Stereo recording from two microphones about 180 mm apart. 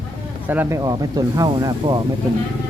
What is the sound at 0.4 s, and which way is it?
Speech, 10° right (ahead or behind).